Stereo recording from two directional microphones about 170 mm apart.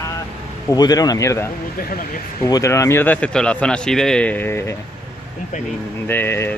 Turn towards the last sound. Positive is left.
turn(degrees=15)  # may be behind; listen again after turning